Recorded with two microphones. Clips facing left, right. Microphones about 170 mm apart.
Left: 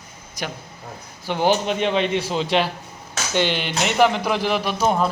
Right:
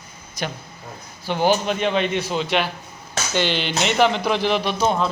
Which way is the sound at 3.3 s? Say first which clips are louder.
Even; 15° left (ahead or behind).